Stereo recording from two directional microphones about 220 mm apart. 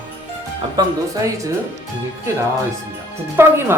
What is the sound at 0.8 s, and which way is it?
Speech, 20° right (ahead or behind).